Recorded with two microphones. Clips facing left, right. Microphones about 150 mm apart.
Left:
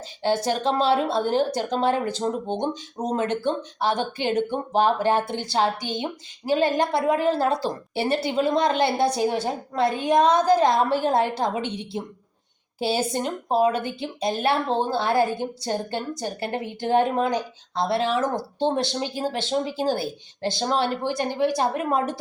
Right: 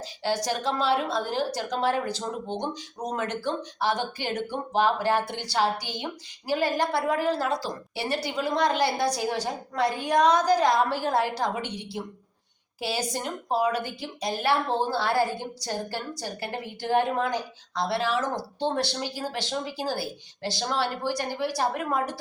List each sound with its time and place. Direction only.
0.2 s speech: 25° left (ahead or behind)